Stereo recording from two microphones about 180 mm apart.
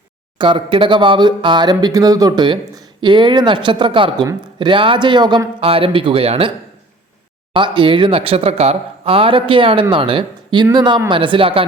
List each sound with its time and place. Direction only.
0.3 s speech: 30° right (ahead or behind)
7.5 s speech: 25° right (ahead or behind)